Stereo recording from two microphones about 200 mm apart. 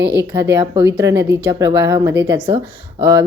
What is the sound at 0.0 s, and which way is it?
Speech, 55° right (ahead or behind).